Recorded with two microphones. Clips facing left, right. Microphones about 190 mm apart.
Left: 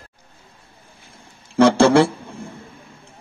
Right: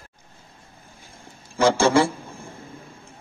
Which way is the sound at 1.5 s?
65° left (ahead or behind).